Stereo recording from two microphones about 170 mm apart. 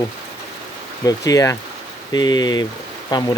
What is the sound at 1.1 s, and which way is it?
Speech, 20° left (ahead or behind).